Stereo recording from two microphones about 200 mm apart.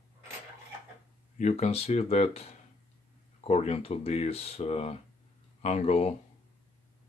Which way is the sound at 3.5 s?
30° left (ahead or behind).